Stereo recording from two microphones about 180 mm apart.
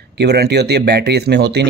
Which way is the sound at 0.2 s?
65° right (ahead or behind).